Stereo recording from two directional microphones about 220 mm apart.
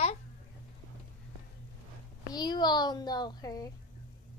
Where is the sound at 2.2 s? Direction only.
20° left (ahead or behind).